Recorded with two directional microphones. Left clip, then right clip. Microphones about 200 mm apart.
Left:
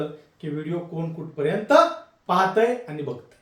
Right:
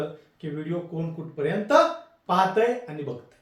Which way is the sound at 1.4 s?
15° left (ahead or behind).